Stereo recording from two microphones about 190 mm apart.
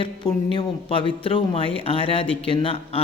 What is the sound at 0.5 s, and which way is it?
Speech, 30° left (ahead or behind).